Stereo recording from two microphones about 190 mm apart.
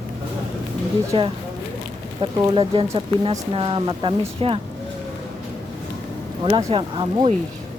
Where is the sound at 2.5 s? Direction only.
30° right (ahead or behind).